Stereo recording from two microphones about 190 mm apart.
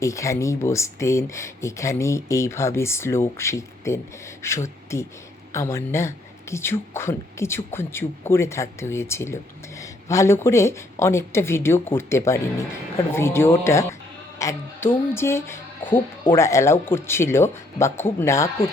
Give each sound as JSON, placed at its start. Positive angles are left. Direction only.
{"t": 0.0, "sound": "speech", "side_deg": 15}
{"t": 14.3, "sound": "a sound", "side_deg": 15}
{"t": 15.1, "sound": "speech", "side_deg": 15}